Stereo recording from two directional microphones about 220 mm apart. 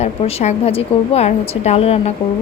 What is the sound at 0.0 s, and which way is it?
A woman's voice, 30° left (ahead or behind).